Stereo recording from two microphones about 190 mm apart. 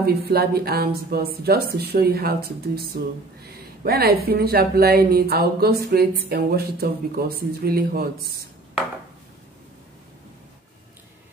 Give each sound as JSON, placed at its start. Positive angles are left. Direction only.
{"t": 0.3, "sound": "speech", "side_deg": -55}